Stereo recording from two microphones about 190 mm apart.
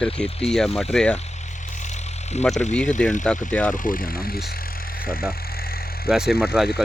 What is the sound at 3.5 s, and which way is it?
Speech, 5° left (ahead or behind).